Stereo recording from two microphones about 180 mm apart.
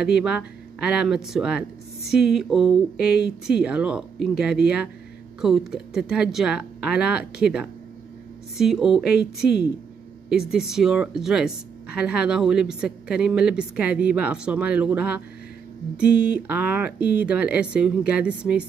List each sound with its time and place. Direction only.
0.0 s speech: 5° right (ahead or behind)